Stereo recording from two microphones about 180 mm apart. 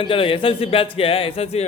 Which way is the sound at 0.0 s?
30° left (ahead or behind).